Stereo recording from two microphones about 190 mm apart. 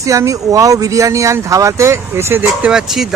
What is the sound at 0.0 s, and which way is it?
A man's voice, 15° right (ahead or behind).